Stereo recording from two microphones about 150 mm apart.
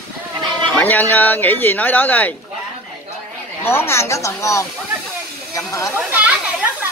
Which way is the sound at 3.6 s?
15° left (ahead or behind).